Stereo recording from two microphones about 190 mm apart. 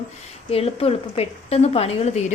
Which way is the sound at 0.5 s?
30° left (ahead or behind).